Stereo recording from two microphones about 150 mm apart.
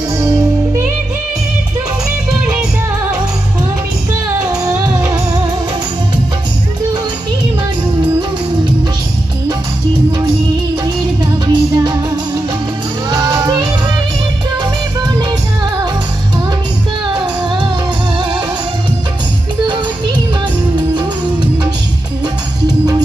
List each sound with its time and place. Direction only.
0.2 s music: 20° right (ahead or behind)
10.1 s music: 30° right (ahead or behind)
11.4 s music: 30° right (ahead or behind)
17.2 s music: 30° right (ahead or behind)